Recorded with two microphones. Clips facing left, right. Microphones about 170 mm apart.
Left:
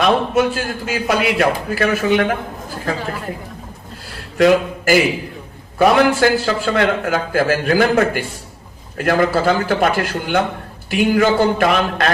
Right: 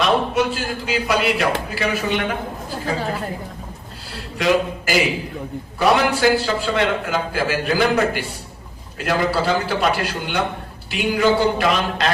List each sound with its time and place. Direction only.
0.0 s a man's voice: 50° left (ahead or behind)
4.4 s a man's voice: 50° left (ahead or behind)